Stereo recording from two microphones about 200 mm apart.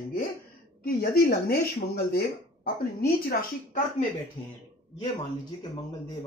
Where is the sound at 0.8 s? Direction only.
50° left (ahead or behind).